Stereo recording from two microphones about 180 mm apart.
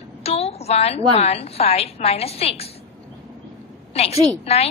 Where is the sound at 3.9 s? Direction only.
35° left (ahead or behind).